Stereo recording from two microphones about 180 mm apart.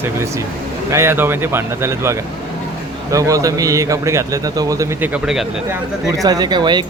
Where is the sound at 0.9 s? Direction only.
15° right (ahead or behind).